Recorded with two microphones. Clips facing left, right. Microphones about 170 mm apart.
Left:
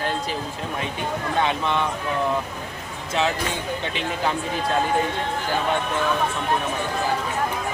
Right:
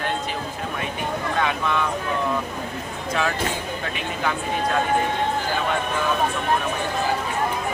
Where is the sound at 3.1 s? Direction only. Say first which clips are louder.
Left 1 dB; 25° left (ahead or behind).